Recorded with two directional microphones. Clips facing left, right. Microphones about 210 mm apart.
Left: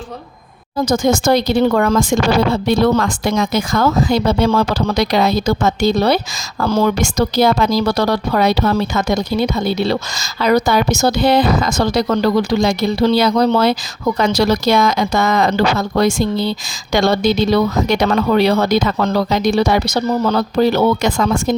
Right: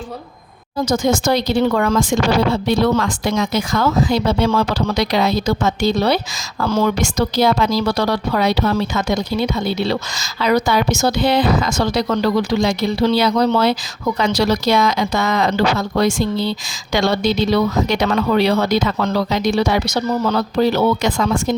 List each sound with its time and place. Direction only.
0.9 s speech: 45° left (ahead or behind)
20.6 s speech: 50° left (ahead or behind)